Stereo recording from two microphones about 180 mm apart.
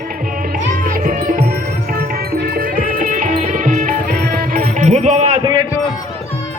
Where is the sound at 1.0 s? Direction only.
50° right (ahead or behind).